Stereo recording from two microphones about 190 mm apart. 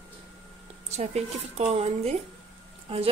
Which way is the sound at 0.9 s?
35° right (ahead or behind).